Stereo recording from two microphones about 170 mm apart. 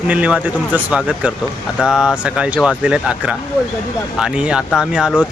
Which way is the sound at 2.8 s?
5° right (ahead or behind).